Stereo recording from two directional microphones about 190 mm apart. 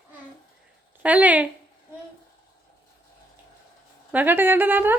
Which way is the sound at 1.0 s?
5° right (ahead or behind).